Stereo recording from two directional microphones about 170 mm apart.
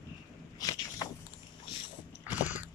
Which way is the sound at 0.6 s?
20° left (ahead or behind).